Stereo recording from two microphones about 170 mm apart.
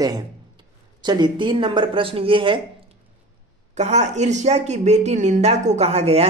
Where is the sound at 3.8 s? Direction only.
40° right (ahead or behind).